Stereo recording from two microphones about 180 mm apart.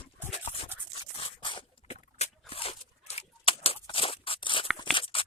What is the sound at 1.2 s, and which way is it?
Scissors, 30° left (ahead or behind).